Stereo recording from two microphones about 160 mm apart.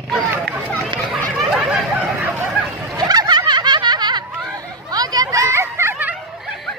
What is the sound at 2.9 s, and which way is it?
Snicker, 25° right (ahead or behind).